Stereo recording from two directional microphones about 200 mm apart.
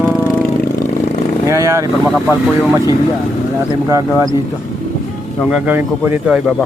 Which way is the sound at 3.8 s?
15° right (ahead or behind).